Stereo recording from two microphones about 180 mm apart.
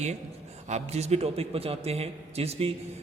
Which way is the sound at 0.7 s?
35° right (ahead or behind).